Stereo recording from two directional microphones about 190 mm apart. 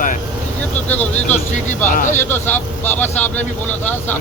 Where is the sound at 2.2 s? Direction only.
10° left (ahead or behind).